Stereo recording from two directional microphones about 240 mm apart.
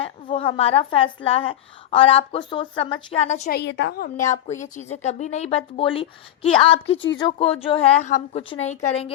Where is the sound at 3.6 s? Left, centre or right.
Left.